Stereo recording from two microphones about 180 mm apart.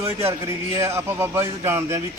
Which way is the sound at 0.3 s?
15° right (ahead or behind).